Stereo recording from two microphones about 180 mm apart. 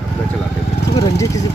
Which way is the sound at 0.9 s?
20° left (ahead or behind).